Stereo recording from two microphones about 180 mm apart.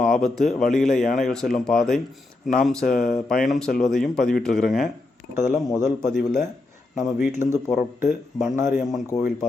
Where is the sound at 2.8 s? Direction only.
50° left (ahead or behind).